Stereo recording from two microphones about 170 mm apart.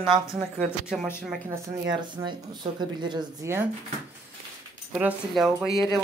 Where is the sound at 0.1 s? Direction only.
Centre (ahead or behind).